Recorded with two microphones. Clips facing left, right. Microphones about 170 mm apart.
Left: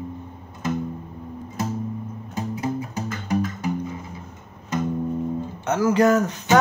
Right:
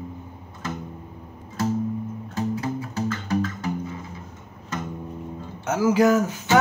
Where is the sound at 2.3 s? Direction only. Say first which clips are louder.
Even; 15° left (ahead or behind).